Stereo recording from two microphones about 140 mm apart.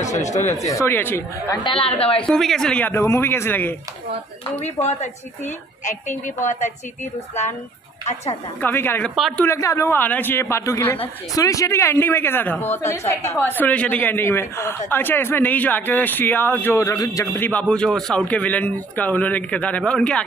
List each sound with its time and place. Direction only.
0.0 s a sound: 55° left (ahead or behind)
0.7 s speech: 20° left (ahead or behind)
1.6 s a woman's voice: 40° left (ahead or behind)
2.2 s speech: 5° left (ahead or behind)
2.9 s a woman's voice: 20° left (ahead or behind)
4.6 s a woman's voice: 55° left (ahead or behind)
8.5 s a woman's voice: 15° left (ahead or behind)
17.3 s a woman's voice: 10° left (ahead or behind)